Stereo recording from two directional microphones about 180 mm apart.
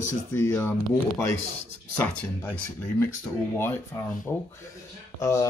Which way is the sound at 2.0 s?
10° left (ahead or behind).